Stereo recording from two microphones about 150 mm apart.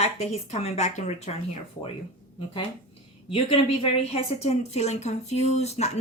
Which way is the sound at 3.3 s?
35° left (ahead or behind).